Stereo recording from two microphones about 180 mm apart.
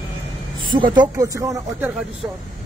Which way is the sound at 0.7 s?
25° right (ahead or behind).